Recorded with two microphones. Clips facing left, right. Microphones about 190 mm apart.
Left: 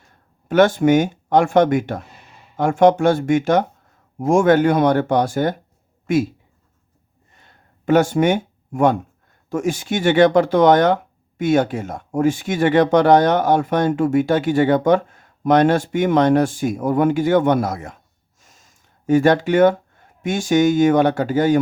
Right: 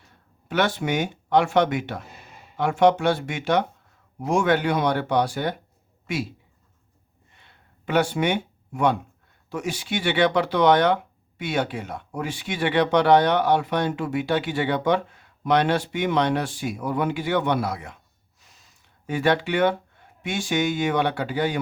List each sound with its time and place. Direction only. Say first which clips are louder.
0.4 s speech: left 10 dB; 45° left (ahead or behind)
7.3 s a sound: left 4 dB; 45° left (ahead or behind)
9.5 s speech: left 7 dB; 45° left (ahead or behind)